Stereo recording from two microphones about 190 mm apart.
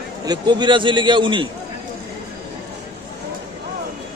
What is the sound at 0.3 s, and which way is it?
A man's voice, 25° right (ahead or behind).